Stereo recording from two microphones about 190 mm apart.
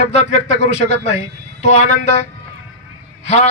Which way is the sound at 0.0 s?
35° left (ahead or behind).